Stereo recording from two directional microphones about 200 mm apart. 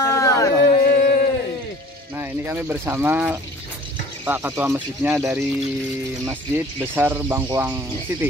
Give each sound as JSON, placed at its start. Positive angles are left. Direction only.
{"t": 0.0, "sound": "a sound", "side_deg": 15}
{"t": 0.7, "sound": "music", "side_deg": 50}
{"t": 2.1, "sound": "speech", "side_deg": -10}